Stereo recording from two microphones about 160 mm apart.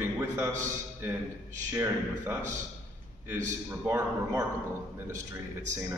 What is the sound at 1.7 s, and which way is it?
Speech, 15° right (ahead or behind).